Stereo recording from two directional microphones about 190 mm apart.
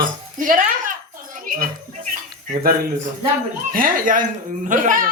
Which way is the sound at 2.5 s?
50° right (ahead or behind).